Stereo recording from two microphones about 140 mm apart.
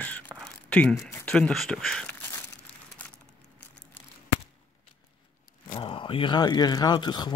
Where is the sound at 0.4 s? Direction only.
10° left (ahead or behind).